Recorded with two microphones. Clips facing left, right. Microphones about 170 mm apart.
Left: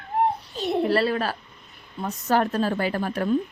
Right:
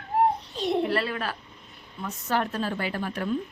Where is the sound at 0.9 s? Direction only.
35° left (ahead or behind).